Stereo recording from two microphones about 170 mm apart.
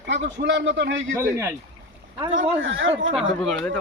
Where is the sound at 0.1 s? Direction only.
90° right.